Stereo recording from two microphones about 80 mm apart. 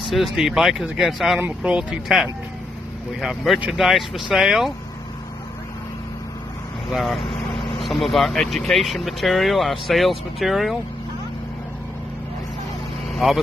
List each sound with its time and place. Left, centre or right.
0.1 s speech: centre
1.6 s speech: centre
3.2 s speech: centre
6.9 s speech: centre
13.1 s speech: centre